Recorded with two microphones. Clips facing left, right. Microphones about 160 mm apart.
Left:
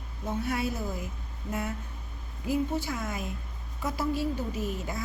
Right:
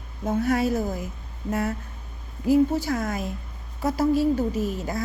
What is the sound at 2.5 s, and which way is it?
A woman's voice, 40° right (ahead or behind).